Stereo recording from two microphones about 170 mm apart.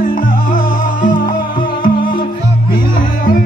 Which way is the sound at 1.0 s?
50° left (ahead or behind).